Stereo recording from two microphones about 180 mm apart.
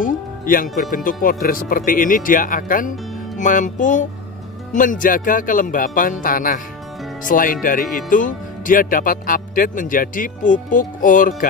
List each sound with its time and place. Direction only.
0.0 s speech: 50° left (ahead or behind)